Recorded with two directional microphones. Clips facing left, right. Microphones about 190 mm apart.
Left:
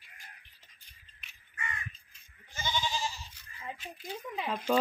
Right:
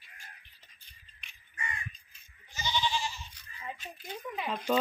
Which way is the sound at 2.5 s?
50° left (ahead or behind).